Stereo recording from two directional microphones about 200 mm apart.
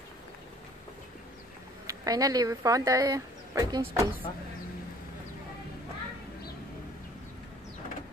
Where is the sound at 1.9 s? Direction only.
20° right (ahead or behind).